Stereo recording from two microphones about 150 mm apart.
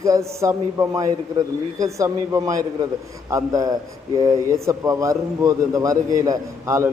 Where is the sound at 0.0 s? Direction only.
20° right (ahead or behind).